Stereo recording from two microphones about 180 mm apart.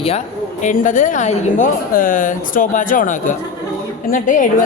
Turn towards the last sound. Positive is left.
turn(degrees=45)  # may be behind; listen again after turning